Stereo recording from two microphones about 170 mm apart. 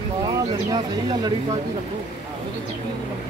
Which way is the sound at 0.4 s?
25° right (ahead or behind).